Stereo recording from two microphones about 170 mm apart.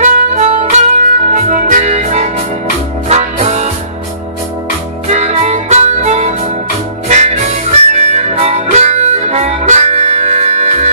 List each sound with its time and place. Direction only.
0.0 s music: 40° right (ahead or behind)
5.0 s harmonica: 40° right (ahead or behind)